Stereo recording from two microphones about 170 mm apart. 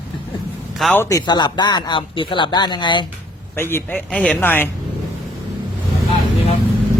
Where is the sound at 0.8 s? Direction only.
10° left (ahead or behind); by 3.0 s 25° left (ahead or behind).